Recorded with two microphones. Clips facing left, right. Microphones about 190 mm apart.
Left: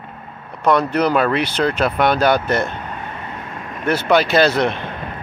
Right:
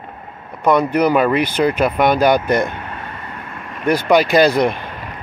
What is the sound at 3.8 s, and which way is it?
Speech, 10° right (ahead or behind).